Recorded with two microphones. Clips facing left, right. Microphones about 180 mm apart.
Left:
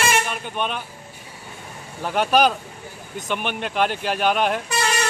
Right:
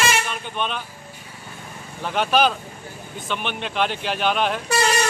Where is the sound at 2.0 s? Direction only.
10° left (ahead or behind).